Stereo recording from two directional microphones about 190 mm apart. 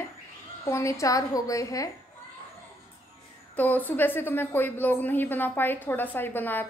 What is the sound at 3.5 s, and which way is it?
A woman's voice, 10° left (ahead or behind).